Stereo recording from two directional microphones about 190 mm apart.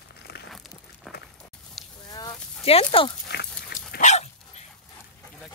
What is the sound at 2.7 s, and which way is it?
Speech, 30° left (ahead or behind).